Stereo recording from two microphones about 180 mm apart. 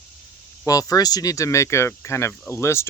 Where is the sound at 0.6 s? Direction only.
20° left (ahead or behind).